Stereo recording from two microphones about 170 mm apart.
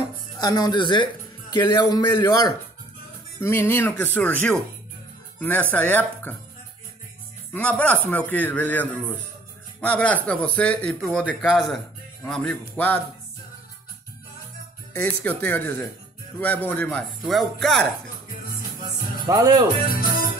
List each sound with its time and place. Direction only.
0.4 s a man's voice: 25° left (ahead or behind)
7.5 s speech: 10° left (ahead or behind)
15.0 s a man's voice: 10° left (ahead or behind)
19.2 s speech: 20° right (ahead or behind)
19.7 s speech: 55° left (ahead or behind)